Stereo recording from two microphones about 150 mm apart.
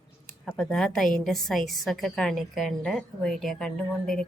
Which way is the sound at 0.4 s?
5° left (ahead or behind).